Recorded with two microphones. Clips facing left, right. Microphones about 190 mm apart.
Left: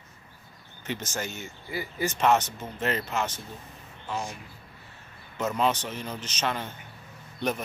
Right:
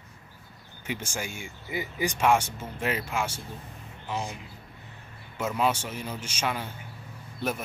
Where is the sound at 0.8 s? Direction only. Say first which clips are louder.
Left 1 dB; 10° right (ahead or behind).